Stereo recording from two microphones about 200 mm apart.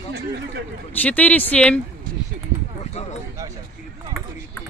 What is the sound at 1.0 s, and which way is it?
Speech, 10° left (ahead or behind).